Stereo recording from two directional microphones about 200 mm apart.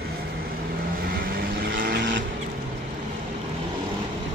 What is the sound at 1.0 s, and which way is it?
Vehicle, 45° right (ahead or behind).